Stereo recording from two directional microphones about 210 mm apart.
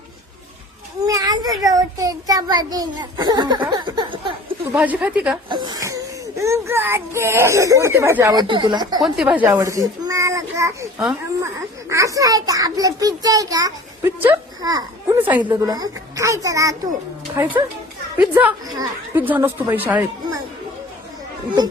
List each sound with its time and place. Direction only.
1.0 s child singing: 15° right (ahead or behind)
4.7 s speech: 5° right (ahead or behind)
5.5 s speech: 20° right (ahead or behind)
9.0 s speech: 5° right (ahead or behind)
11.9 s speech: 15° right (ahead or behind)